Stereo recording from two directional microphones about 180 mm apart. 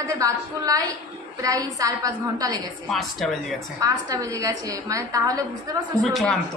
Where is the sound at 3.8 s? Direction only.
20° right (ahead or behind).